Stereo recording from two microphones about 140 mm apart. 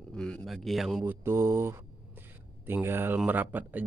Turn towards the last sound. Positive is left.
turn(degrees=-10)  # may be behind; listen again after turning